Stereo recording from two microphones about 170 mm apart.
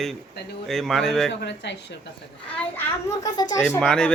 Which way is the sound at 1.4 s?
90° left.